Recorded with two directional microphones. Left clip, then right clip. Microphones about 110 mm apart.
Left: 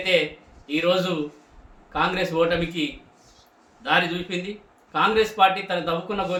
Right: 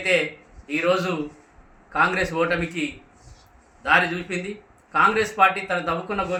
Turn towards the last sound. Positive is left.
turn(degrees=5)  # may be behind; listen again after turning